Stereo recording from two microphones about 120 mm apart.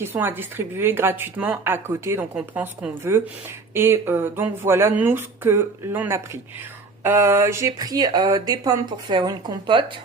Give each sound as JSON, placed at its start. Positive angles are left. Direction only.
{"t": 0.0, "sound": "speech", "side_deg": -20}